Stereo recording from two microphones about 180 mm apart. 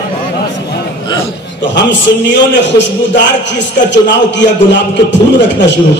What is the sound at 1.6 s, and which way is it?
A man's voice, 85° left.